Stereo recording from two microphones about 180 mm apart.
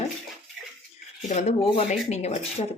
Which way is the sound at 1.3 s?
40° left (ahead or behind).